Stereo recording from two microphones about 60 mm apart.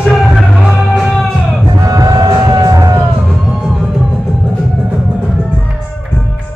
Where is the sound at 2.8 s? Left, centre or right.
Right.